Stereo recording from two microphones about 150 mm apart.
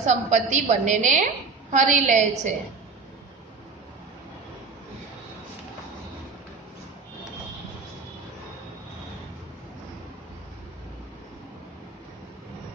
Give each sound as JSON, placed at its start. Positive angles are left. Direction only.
{"t": 0.0, "sound": "a woman's voice", "side_deg": -55}